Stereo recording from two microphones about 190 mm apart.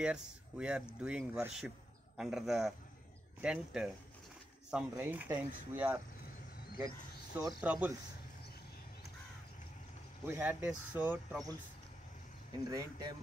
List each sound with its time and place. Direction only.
0.0 s speech: 5° right (ahead or behind)
7.3 s speech: 10° right (ahead or behind)
10.2 s speech: 10° right (ahead or behind)
12.6 s speech: 20° right (ahead or behind)